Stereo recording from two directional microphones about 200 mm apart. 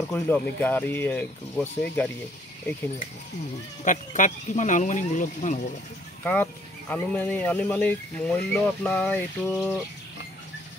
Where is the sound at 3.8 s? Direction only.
40° left (ahead or behind).